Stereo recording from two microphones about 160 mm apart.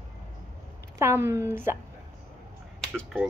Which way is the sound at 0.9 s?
15° right (ahead or behind).